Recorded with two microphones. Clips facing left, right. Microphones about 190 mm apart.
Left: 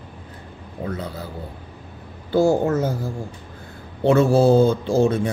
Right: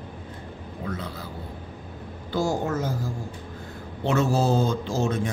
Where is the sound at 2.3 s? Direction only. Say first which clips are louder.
Left 8 dB; 55° left (ahead or behind).